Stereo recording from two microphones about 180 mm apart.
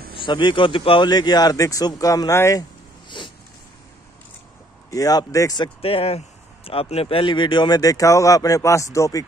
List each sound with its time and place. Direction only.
0.1 s speech: 25° left (ahead or behind)
3.1 s a sound: 25° left (ahead or behind)
4.9 s speech: 20° left (ahead or behind)
5.8 s speech: 30° left (ahead or behind); by 9.2 s 15° left (ahead or behind)